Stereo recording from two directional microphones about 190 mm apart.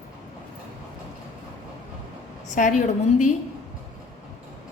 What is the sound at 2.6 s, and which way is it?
Speech, 45° left (ahead or behind).